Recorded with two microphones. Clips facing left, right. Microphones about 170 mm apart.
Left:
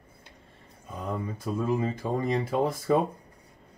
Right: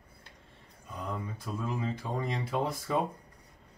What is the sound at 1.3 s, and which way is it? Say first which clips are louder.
Speech: left 8 dB; 50° left (ahead or behind).